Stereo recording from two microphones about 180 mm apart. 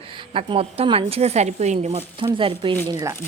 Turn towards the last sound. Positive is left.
turn(degrees=-20)  # may be behind; listen again after turning